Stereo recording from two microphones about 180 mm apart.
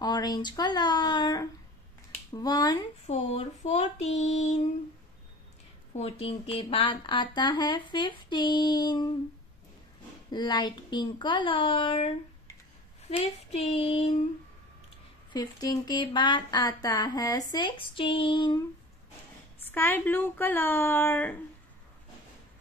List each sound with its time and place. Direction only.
0.0 s speech: 25° left (ahead or behind)
3.1 s child singing: 35° left (ahead or behind)
5.9 s speech: 35° left (ahead or behind)
10.3 s speech: 25° left (ahead or behind)
13.1 s child singing: 35° left (ahead or behind)
15.3 s speech: 20° left (ahead or behind)
19.7 s speech: 10° left (ahead or behind)